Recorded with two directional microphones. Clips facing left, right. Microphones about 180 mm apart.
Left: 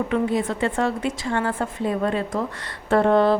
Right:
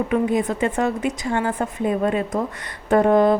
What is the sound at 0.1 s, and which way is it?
A woman's voice, 20° right (ahead or behind).